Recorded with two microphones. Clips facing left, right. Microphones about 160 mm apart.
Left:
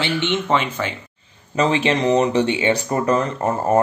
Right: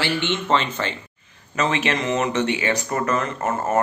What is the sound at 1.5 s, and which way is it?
Speech, 30° left (ahead or behind).